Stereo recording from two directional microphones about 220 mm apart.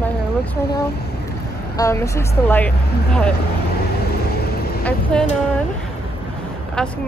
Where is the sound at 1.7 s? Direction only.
15° left (ahead or behind).